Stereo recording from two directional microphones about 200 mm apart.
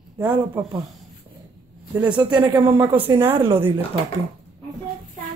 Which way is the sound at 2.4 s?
10° right (ahead or behind).